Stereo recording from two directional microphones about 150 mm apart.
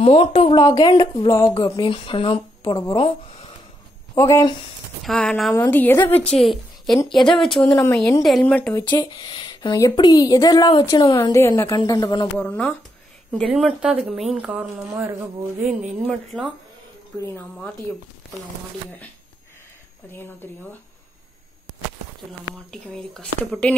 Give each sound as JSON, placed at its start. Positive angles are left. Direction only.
{"t": 0.0, "sound": "speech", "side_deg": 40}
{"t": 0.6, "sound": "a woman's voice", "side_deg": 25}
{"t": 4.1, "sound": "a woman's voice", "side_deg": 20}
{"t": 5.0, "sound": "speech", "side_deg": 0}
{"t": 5.5, "sound": "a woman's voice", "side_deg": 15}
{"t": 6.3, "sound": "a woman's voice", "side_deg": 0}
{"t": 7.7, "sound": "a woman's voice", "side_deg": 15}
{"t": 8.2, "sound": "speech", "side_deg": 0}
{"t": 8.8, "sound": "a woman's voice", "side_deg": 30}
{"t": 12.4, "sound": "a woman's voice", "side_deg": 10}
{"t": 13.5, "sound": "speech", "side_deg": -5}
{"t": 15.9, "sound": "speech", "side_deg": 0}
{"t": 17.2, "sound": "a woman's voice", "side_deg": 15}
{"t": 22.7, "sound": "speech", "side_deg": 5}